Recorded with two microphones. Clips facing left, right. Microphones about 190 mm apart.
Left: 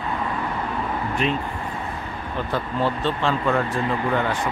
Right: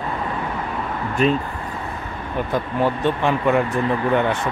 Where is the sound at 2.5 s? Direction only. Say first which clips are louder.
Right 3 dB; 15° right (ahead or behind).